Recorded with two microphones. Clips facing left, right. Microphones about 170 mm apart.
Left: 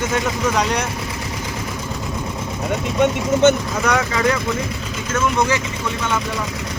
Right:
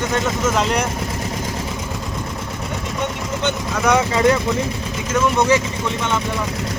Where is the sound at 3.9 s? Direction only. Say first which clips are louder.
Right 4 dB; 25° right (ahead or behind).